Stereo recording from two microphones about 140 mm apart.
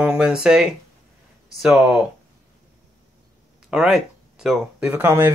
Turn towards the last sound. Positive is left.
turn(degrees=-15)  # may be behind; listen again after turning